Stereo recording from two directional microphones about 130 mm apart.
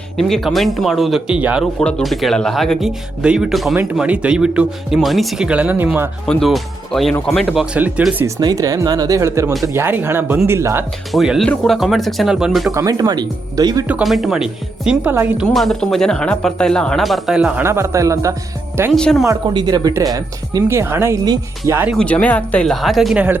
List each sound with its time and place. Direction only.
0.2 s speech: centre (ahead or behind)
1.8 s speech: 5° left (ahead or behind); by 6.1 s 15° right (ahead or behind)
6.2 s speech: centre (ahead or behind)
8.4 s speech: 30° right (ahead or behind)
11.1 s speech: centre (ahead or behind)
12.7 s speech: 30° right (ahead or behind)
14.0 s speech: centre (ahead or behind)
17.6 s speech: 20° right (ahead or behind)
18.9 s speech: 5° left (ahead or behind)
19.2 s speech: 30° right (ahead or behind)
20.7 s speech: 20° right (ahead or behind)
21.9 s speech: 10° left (ahead or behind)